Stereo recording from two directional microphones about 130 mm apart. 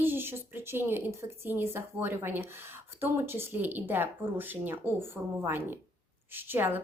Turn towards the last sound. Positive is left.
turn(degrees=-15)  # may be behind; listen again after turning